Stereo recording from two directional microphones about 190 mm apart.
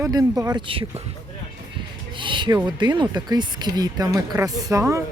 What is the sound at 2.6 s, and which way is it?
Speech, 25° right (ahead or behind).